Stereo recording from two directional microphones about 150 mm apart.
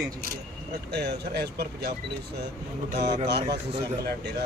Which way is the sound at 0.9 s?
90° right.